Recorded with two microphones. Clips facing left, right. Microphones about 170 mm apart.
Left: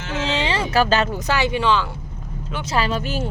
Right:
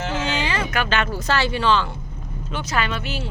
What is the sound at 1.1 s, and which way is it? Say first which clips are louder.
Speech: left 1 dB; 15° left (ahead or behind).